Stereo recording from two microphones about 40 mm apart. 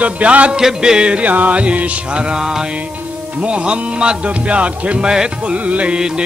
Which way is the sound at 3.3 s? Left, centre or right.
Right.